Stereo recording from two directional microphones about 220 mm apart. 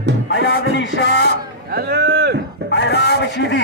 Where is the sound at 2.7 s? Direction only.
50° left (ahead or behind).